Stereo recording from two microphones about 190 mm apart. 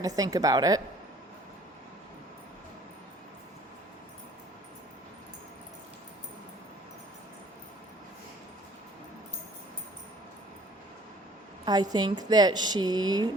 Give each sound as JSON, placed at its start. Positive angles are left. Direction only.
{"t": 0.0, "sound": "a woman's voice", "side_deg": -20}
{"t": 11.6, "sound": "a woman's voice", "side_deg": -20}